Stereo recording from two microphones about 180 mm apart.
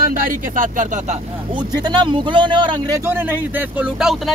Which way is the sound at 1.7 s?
25° right (ahead or behind).